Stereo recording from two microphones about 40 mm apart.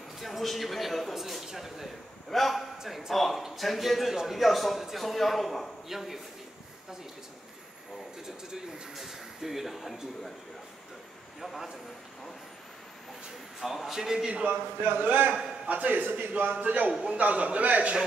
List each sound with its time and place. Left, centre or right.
0.2 s speech: centre
1.1 s a sound: centre
2.3 s speech: centre
2.8 s speech: centre
8.9 s speech: centre
11.4 s a man's voice: centre
13.6 s a man's voice: centre
14.5 s speech: right
15.7 s a man's voice: right
16.0 s a man's voice: right
16.5 s a man's voice: right